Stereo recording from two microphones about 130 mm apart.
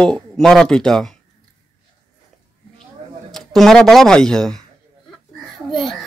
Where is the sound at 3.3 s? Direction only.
Centre (ahead or behind).